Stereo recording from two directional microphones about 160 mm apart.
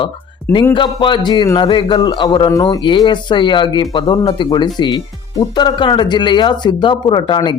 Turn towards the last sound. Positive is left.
turn(degrees=30)  # may be behind; listen again after turning